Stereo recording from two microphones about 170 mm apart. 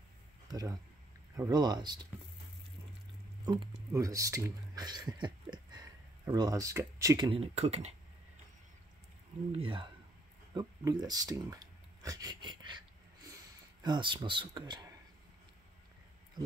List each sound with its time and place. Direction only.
0.5 s speech: 20° right (ahead or behind)
3.4 s speech: 20° right (ahead or behind)
7.2 s speech: 35° right (ahead or behind)
9.5 s speech: 30° right (ahead or behind)
13.8 s speech: 30° right (ahead or behind)